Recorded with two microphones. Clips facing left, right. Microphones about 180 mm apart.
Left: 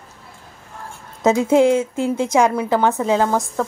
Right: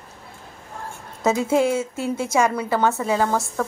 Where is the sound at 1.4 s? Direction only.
20° left (ahead or behind).